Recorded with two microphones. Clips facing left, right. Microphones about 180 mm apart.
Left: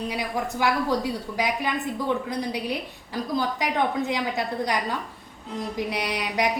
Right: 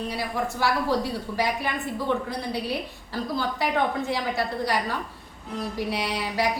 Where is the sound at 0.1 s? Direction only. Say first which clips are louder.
Even; 15° left (ahead or behind).